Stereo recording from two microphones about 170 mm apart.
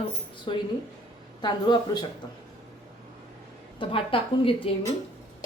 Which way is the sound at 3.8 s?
30° left (ahead or behind).